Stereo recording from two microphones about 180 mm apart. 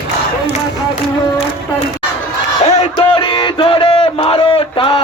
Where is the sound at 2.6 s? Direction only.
30° left (ahead or behind).